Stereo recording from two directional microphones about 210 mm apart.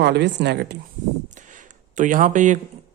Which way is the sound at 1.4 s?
35° right (ahead or behind).